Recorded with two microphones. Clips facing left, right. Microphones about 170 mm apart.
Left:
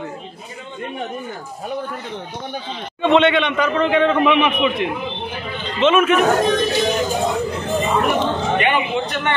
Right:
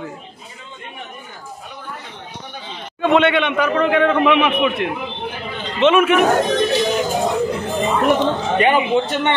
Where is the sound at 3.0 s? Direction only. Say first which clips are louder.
Even; 5° right (ahead or behind).